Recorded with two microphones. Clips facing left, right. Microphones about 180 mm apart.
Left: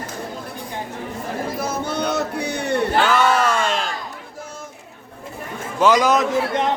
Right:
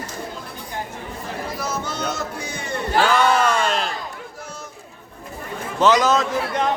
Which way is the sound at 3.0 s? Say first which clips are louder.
Right 3 dB; 5° left (ahead or behind).